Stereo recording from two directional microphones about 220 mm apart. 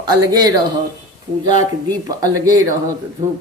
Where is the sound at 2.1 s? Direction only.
15° right (ahead or behind).